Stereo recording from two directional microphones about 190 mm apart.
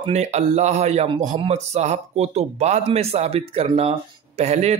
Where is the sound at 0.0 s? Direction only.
35° right (ahead or behind).